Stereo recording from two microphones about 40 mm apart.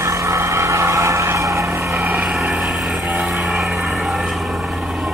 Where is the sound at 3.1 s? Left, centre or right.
Centre.